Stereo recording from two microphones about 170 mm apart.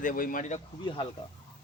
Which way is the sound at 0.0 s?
55° left (ahead or behind).